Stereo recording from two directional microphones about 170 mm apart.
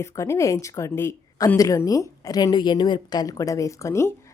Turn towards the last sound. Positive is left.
turn(degrees=15)  # may be behind; listen again after turning